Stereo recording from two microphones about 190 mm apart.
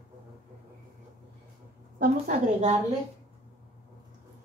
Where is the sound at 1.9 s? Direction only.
50° right (ahead or behind).